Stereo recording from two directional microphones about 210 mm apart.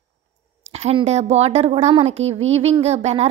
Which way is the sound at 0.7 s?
30° right (ahead or behind).